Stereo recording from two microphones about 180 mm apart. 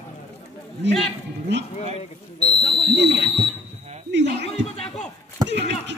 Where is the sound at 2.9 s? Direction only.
70° right (ahead or behind).